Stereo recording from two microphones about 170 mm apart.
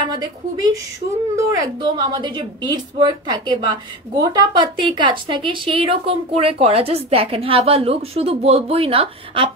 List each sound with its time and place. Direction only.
0.0 s a woman's voice: 25° right (ahead or behind)